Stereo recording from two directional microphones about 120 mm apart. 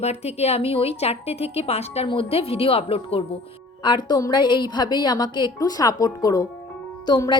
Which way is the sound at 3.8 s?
40° left (ahead or behind).